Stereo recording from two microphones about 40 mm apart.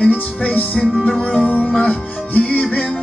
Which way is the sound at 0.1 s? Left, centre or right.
Left.